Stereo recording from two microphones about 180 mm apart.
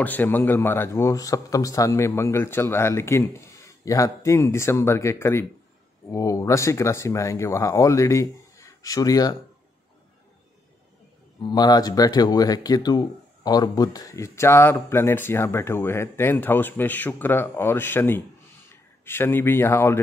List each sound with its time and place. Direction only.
0.0 s speech: 10° left (ahead or behind)
11.5 s speech: 20° left (ahead or behind)